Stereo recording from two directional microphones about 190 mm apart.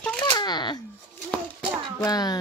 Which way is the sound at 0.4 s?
20° left (ahead or behind).